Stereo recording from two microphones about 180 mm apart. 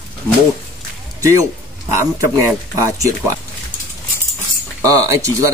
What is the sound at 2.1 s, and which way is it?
Speech, 15° right (ahead or behind).